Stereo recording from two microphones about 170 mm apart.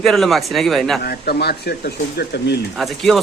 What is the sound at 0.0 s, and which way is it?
Speech, centre (ahead or behind).